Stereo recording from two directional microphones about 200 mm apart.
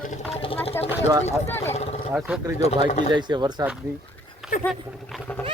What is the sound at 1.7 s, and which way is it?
Roaring cats, 30° left (ahead or behind).